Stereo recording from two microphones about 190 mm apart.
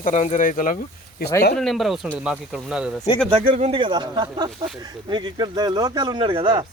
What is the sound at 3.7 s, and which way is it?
Speech, 25° right (ahead or behind).